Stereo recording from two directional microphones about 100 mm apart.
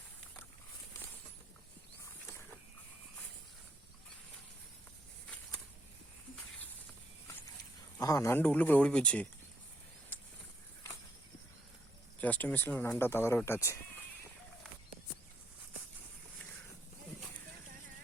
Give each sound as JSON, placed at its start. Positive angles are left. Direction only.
{"t": 7.9, "sound": "speech", "side_deg": 35}
{"t": 12.2, "sound": "speech", "side_deg": 15}